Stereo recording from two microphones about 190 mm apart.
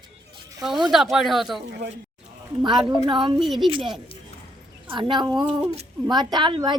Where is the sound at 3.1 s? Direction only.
25° right (ahead or behind).